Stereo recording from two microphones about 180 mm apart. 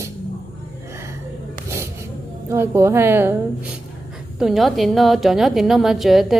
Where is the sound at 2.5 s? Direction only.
15° right (ahead or behind).